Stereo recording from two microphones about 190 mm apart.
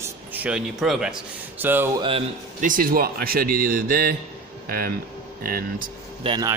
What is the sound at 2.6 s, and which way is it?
A man's voice, 45° right (ahead or behind).